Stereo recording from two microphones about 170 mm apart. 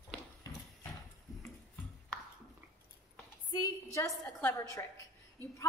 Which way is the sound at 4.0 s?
15° left (ahead or behind).